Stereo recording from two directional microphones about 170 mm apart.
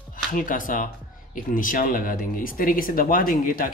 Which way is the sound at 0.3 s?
55° left (ahead or behind).